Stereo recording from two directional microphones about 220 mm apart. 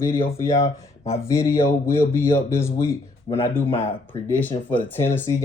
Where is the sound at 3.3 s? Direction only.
20° left (ahead or behind).